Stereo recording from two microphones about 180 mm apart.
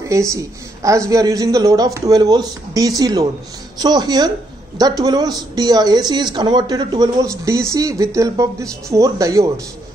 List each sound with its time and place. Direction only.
0.1 s speech: 15° right (ahead or behind)